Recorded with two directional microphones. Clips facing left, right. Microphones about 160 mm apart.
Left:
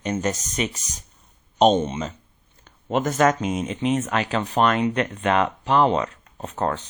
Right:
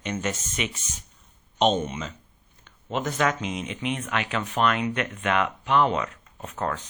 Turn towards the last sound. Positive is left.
turn(degrees=35)  # may be behind; listen again after turning